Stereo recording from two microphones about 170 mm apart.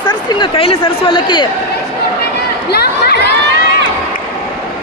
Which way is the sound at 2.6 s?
70° left (ahead or behind).